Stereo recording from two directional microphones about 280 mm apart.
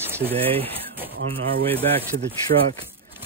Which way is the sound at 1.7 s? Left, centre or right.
Right.